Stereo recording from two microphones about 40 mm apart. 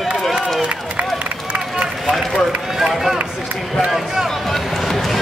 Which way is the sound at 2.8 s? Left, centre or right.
Centre.